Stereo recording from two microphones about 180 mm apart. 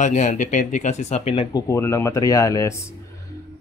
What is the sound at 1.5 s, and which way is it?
Speech, 15° left (ahead or behind).